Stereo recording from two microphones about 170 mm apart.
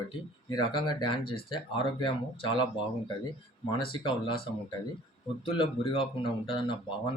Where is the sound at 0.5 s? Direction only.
25° left (ahead or behind).